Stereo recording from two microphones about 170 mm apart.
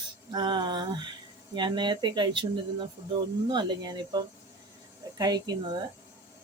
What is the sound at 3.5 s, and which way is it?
Speech, 25° right (ahead or behind).